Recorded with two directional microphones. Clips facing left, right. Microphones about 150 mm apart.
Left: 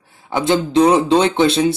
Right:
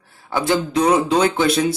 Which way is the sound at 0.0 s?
20° left (ahead or behind).